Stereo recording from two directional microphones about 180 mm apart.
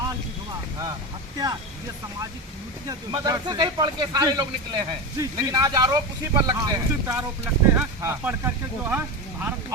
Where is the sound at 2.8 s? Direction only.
20° right (ahead or behind).